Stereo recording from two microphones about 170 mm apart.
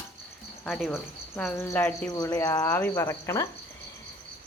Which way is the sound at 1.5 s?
20° left (ahead or behind).